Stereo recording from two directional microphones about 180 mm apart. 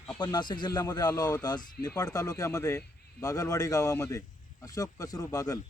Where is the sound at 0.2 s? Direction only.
25° left (ahead or behind).